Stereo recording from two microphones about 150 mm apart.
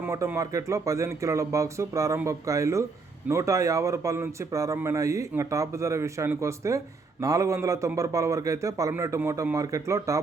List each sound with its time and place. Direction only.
0.0 s speech: 15° right (ahead or behind)